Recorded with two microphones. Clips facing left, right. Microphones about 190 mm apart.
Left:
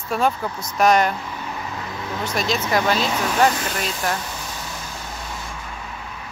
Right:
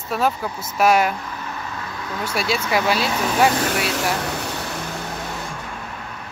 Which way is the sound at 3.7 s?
75° right (ahead or behind).